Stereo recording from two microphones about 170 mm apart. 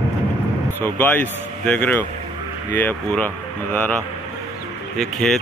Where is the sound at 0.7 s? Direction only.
10° left (ahead or behind).